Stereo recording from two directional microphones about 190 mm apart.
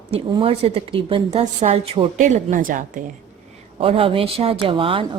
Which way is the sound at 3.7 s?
30° right (ahead or behind).